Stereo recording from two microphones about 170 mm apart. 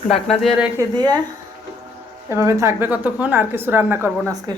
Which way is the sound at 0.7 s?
25° right (ahead or behind).